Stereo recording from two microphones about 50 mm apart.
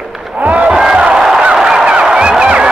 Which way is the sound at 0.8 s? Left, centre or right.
Centre.